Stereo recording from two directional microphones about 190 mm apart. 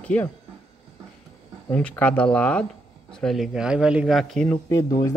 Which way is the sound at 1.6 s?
10° left (ahead or behind).